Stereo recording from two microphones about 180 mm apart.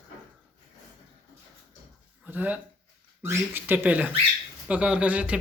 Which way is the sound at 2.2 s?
10° right (ahead or behind).